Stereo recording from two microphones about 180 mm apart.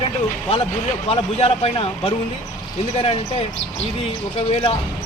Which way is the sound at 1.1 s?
35° left (ahead or behind).